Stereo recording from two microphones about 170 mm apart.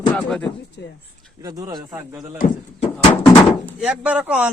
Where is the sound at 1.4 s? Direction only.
20° right (ahead or behind).